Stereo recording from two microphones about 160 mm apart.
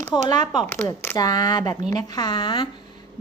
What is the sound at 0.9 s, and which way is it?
A woman's voice, 20° left (ahead or behind).